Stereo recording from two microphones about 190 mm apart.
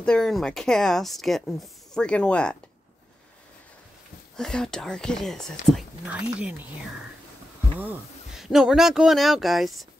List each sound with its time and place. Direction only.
0.0 s speech: 5° left (ahead or behind)
4.4 s speech: 5° left (ahead or behind)
7.8 s speech: 5° right (ahead or behind)